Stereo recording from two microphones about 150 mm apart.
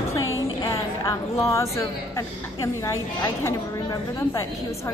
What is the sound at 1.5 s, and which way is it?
A woman's voice, 20° left (ahead or behind).